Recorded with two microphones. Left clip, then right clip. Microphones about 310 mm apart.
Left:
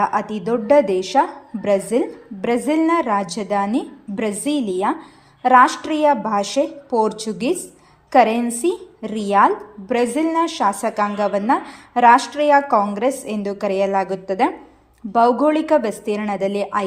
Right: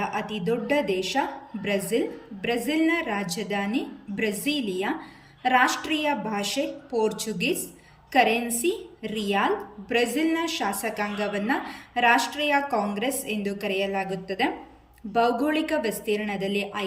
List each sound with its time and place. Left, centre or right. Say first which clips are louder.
0.0 s a woman's voice: left 9 dB; centre